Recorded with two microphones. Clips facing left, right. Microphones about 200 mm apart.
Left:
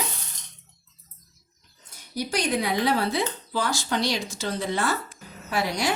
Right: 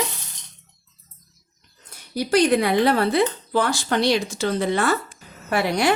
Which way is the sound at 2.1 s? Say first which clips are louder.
Right 8 dB; 65° right (ahead or behind).